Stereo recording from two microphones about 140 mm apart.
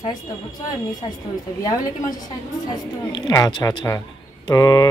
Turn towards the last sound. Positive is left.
turn(degrees=25)  # may be behind; listen again after turning